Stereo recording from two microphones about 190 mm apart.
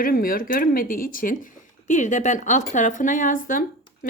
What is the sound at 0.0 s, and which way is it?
Speech, 50° left (ahead or behind).